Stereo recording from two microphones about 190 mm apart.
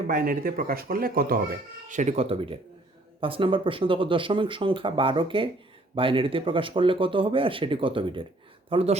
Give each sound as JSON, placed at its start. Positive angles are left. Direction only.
{"t": 0.1, "sound": "speech", "side_deg": -50}